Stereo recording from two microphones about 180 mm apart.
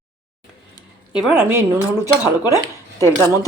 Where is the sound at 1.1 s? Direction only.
5° right (ahead or behind).